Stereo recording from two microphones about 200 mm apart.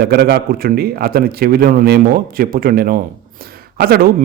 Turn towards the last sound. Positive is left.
turn(degrees=-50)  # may be behind; listen again after turning